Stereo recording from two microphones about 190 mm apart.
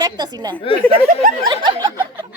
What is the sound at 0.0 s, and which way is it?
A woman's voice, 20° right (ahead or behind).